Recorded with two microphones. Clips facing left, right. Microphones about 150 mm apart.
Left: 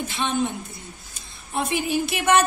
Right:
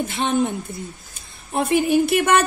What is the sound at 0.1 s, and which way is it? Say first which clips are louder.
Speech: right 3 dB; 50° right (ahead or behind).